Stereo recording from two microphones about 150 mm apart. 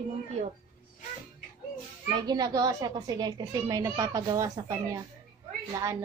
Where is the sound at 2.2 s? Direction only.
25° right (ahead or behind).